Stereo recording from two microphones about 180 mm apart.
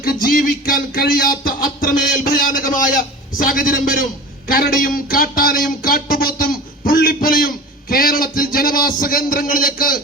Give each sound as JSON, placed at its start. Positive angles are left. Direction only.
{"t": 0.0, "sound": "speech", "side_deg": 55}